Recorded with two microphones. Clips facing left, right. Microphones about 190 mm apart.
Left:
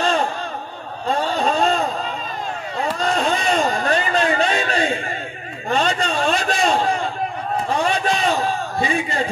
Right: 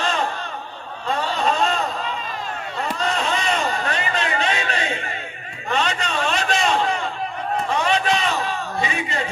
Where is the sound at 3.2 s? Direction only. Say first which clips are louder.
Left 5 dB; 35° left (ahead or behind).